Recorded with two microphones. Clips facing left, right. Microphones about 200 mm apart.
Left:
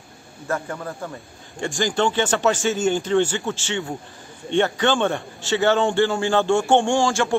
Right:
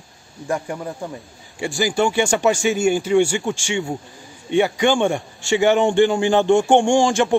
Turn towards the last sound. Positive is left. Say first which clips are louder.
# right 4 dB
turn(degrees=-15)  # may be behind; listen again after turning